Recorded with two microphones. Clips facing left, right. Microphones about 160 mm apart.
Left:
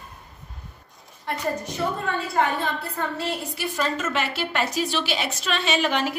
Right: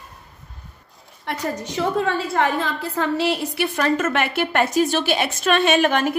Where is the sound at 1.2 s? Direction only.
90° right.